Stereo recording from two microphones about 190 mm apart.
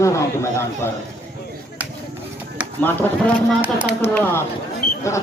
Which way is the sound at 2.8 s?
10° left (ahead or behind).